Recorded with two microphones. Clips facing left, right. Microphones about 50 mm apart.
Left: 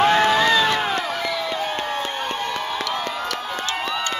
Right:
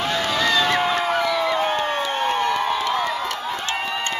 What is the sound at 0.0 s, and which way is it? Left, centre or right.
Crowd, left.